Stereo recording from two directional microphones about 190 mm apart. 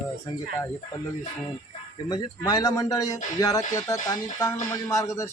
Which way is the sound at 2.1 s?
20° left (ahead or behind).